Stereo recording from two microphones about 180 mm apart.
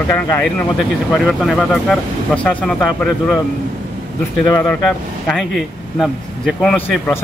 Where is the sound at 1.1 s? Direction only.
5° right (ahead or behind).